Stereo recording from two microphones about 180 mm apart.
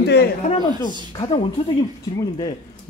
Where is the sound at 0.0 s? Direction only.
65° left (ahead or behind).